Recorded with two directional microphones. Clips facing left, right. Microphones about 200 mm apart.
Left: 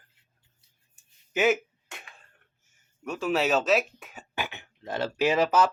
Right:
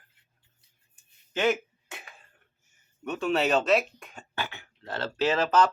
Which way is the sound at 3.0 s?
Centre (ahead or behind).